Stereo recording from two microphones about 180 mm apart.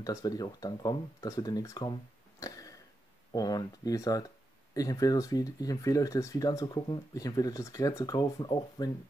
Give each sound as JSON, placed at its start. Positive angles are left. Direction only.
{"t": 0.0, "sound": "speech", "side_deg": 20}
{"t": 2.4, "sound": "a sound", "side_deg": 20}
{"t": 3.3, "sound": "speech", "side_deg": 20}